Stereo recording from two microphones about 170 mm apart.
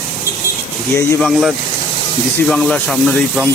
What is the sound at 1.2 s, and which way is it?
Speech, centre (ahead or behind).